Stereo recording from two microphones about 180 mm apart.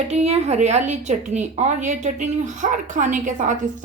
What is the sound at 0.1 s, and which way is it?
A woman's voice, 35° right (ahead or behind).